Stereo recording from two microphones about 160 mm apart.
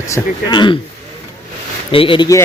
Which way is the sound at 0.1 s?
25° left (ahead or behind).